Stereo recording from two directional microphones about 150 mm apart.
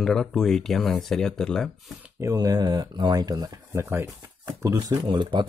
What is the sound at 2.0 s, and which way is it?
Speech, 20° right (ahead or behind).